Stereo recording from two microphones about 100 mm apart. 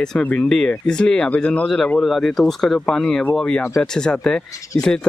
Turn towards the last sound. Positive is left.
turn(degrees=10)  # may be behind; listen again after turning